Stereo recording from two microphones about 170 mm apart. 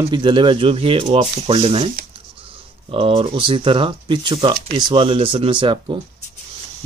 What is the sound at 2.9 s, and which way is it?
Speech, 30° right (ahead or behind).